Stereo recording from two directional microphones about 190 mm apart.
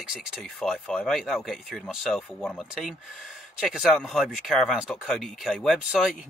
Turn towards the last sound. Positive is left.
turn(degrees=-5)  # may be behind; listen again after turning